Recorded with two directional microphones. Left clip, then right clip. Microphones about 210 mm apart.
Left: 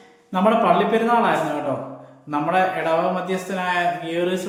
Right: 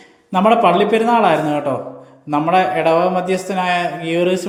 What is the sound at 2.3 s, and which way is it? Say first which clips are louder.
A man's voice: right 5 dB; 35° right (ahead or behind).